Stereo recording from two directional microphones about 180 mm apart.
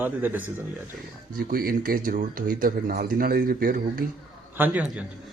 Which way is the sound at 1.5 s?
55° right (ahead or behind).